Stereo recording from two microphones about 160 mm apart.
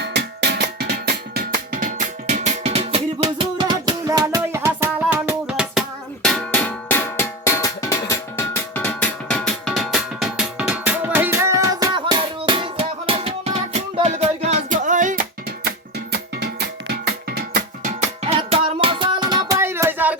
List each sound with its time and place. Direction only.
0.0 s music: 90° right
1.8 s music: 50° right (ahead or behind)
3.2 s music: 25° right (ahead or behind); by 5.8 s 5° right (ahead or behind)
6.2 s music: 5° left (ahead or behind); by 15.7 s 60° right (ahead or behind)
17.3 s music: 60° right (ahead or behind)
18.3 s music: 35° right (ahead or behind); by 20.1 s 10° right (ahead or behind)